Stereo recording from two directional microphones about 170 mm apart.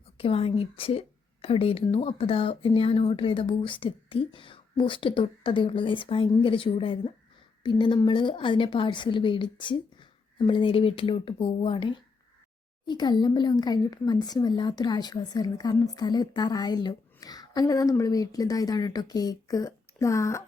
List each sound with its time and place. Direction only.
0.2 s a woman's voice: 35° left (ahead or behind); by 20.4 s 15° left (ahead or behind)